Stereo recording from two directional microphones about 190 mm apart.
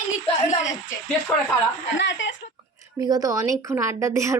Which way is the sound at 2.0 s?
70° left (ahead or behind).